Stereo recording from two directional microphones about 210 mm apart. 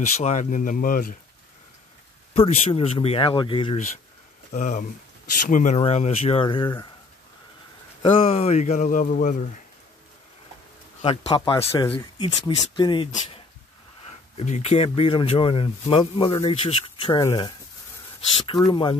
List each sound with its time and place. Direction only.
0.2 s speech: 35° left (ahead or behind)
2.3 s speech: 25° left (ahead or behind)
4.5 s speech: 35° left (ahead or behind)
8.0 s speech: 25° left (ahead or behind)
11.0 s speech: 25° left (ahead or behind)
14.3 s speech: 30° left (ahead or behind)
18.7 s speech: 20° left (ahead or behind)